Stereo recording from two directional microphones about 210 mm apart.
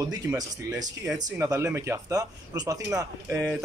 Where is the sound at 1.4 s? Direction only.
10° right (ahead or behind).